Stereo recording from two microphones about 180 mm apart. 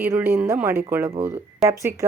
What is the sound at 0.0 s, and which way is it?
A woman's voice, 15° right (ahead or behind).